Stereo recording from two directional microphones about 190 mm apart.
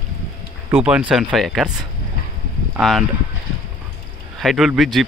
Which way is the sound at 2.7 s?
Centre (ahead or behind).